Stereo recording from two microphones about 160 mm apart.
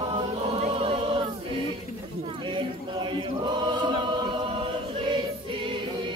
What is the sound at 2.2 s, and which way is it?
Choir, 30° right (ahead or behind).